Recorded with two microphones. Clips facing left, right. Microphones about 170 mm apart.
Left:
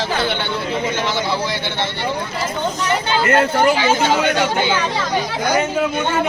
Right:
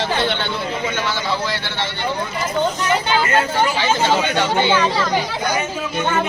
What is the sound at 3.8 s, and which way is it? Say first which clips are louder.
Speech: left 1 dB; 15° left (ahead or behind).